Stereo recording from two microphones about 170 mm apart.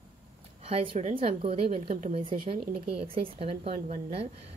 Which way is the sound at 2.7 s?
5° right (ahead or behind).